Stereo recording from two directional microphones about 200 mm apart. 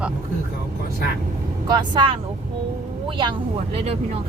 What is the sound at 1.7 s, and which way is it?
Speech, 20° right (ahead or behind).